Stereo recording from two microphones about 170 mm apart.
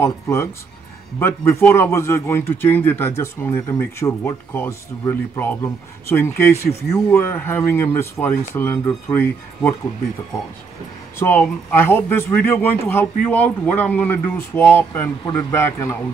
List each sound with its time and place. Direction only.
0.0 s a man's voice: 15° left (ahead or behind)
11.1 s a man's voice: 15° left (ahead or behind)